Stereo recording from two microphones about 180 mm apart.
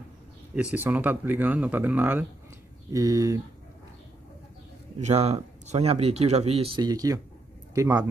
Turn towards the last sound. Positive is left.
turn(degrees=-20)  # may be behind; listen again after turning